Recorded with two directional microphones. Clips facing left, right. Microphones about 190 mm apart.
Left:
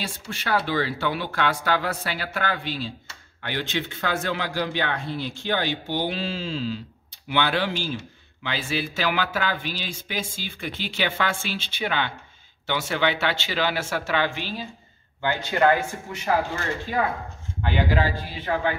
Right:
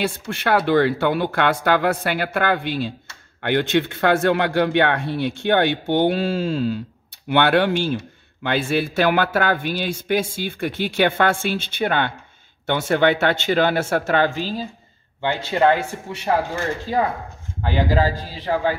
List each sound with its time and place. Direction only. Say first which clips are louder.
0.0 s speech: right 9 dB; 60° right (ahead or behind); by 14.7 s 40° right (ahead or behind)
15.2 s a man's voice: right 3 dB; 25° right (ahead or behind)
17.6 s a man's voice: right 4 dB; 40° right (ahead or behind)